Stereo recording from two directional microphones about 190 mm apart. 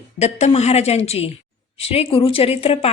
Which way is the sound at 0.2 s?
35° left (ahead or behind).